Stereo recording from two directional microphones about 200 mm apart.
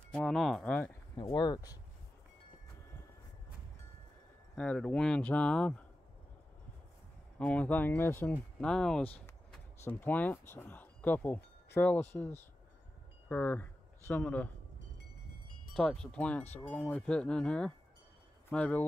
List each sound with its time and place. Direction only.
0.1 s speech: 5° left (ahead or behind)
1.1 s speech: 20° left (ahead or behind)
4.6 s speech: 5° left (ahead or behind)
7.3 s speech: 5° left (ahead or behind)
15.7 s speech: 5° left (ahead or behind)